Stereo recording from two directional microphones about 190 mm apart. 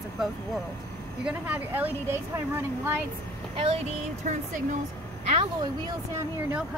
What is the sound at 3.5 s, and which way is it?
Speech, 30° right (ahead or behind).